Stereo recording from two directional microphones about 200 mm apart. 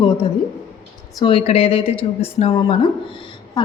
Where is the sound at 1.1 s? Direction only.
25° left (ahead or behind).